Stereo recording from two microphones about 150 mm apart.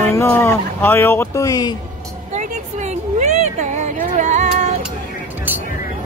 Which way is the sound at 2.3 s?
50° right (ahead or behind).